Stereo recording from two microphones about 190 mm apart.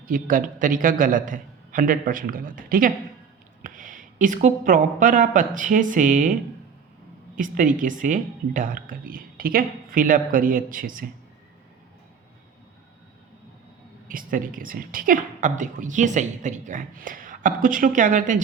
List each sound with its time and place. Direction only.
0.0 s a woman's voice: 45° right (ahead or behind)
14.1 s a woman's voice: 45° right (ahead or behind)